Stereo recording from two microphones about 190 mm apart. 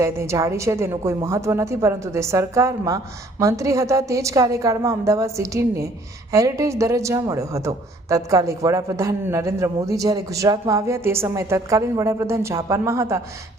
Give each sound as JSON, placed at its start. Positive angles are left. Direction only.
{"t": 0.0, "sound": "a woman's voice", "side_deg": -15}